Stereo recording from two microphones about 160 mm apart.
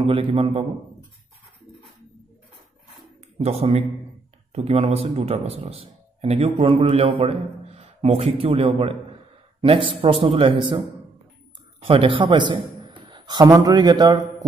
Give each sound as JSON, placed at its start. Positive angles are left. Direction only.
{"t": 0.0, "sound": "a man's voice", "side_deg": -35}
{"t": 3.3, "sound": "a man's voice", "side_deg": -40}
{"t": 11.9, "sound": "a man's voice", "side_deg": -30}